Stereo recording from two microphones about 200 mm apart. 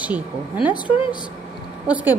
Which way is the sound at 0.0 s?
5° right (ahead or behind).